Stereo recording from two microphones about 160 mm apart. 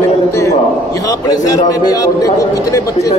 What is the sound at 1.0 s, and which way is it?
A man's voice, 25° left (ahead or behind).